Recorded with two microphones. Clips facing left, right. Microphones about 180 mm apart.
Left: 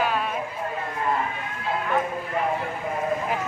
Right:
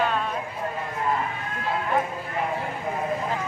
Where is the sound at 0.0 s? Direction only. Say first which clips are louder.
Even; 5° left (ahead or behind).